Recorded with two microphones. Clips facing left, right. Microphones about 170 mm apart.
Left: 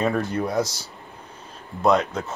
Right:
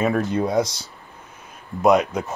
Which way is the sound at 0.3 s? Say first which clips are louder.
Right 3 dB; 20° right (ahead or behind).